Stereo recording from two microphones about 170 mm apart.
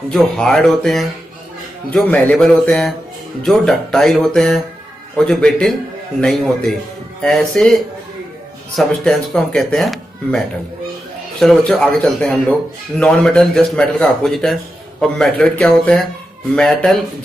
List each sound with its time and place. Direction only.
0.1 s speech: 5° left (ahead or behind)